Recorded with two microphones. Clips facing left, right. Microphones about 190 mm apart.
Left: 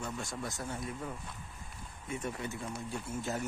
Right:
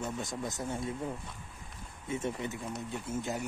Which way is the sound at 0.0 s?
20° right (ahead or behind).